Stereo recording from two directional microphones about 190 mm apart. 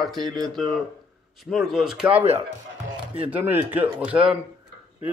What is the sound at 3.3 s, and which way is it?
Speech, 10° right (ahead or behind).